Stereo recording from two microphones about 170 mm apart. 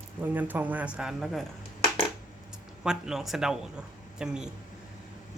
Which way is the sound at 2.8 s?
5° right (ahead or behind).